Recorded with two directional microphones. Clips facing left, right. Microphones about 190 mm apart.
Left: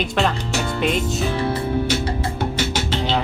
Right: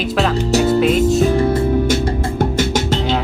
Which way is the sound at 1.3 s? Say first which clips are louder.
Right 6 dB; 50° right (ahead or behind).